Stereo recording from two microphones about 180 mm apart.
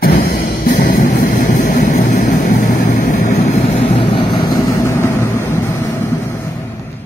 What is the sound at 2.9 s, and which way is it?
Vehicle, 50° left (ahead or behind).